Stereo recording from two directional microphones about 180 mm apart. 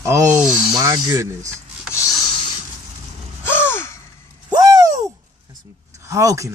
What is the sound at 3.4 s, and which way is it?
Gasp, 10° left (ahead or behind).